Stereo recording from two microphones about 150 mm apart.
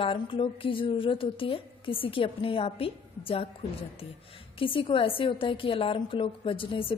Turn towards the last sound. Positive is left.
turn(degrees=35)  # may be behind; listen again after turning